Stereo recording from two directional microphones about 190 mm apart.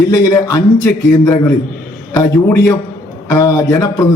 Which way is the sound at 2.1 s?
15° left (ahead or behind).